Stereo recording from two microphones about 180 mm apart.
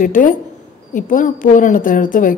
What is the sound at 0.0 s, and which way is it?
Speech, 45° left (ahead or behind).